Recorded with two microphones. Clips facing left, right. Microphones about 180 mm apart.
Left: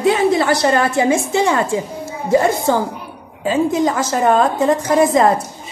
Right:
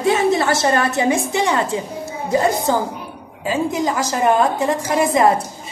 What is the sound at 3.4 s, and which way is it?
A woman's voice, 25° left (ahead or behind).